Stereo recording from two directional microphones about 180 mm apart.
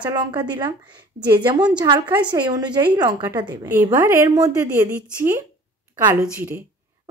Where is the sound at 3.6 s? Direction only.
10° right (ahead or behind).